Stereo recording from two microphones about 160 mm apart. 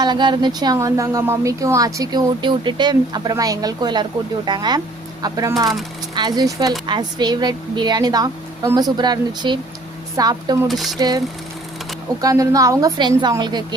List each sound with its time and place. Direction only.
0.0 s speech: 30° right (ahead or behind)
10.7 s a sound: centre (ahead or behind)
12.2 s speech: 20° right (ahead or behind)